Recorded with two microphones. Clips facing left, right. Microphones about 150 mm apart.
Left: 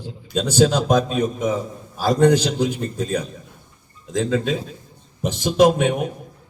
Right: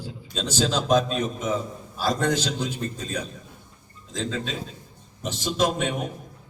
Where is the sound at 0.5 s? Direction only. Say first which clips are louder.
Left 5 dB; 55° left (ahead or behind).